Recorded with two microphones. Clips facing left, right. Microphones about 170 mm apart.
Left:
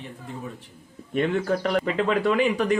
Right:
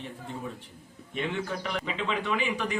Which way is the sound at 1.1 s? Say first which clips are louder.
Left 8 dB; 50° left (ahead or behind).